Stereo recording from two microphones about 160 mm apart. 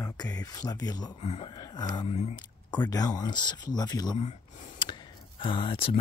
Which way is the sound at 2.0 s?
40° left (ahead or behind).